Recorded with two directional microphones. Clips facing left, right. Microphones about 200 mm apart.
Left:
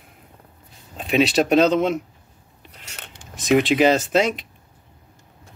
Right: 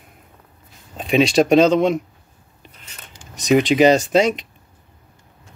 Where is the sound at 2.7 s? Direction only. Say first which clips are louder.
Left 4 dB; 75° left (ahead or behind).